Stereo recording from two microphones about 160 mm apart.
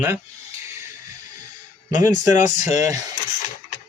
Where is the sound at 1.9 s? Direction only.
50° left (ahead or behind).